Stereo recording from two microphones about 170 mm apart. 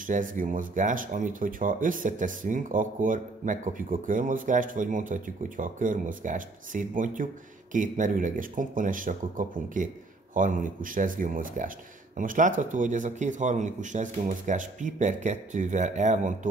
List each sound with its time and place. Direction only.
0.0 s speech: 50° right (ahead or behind)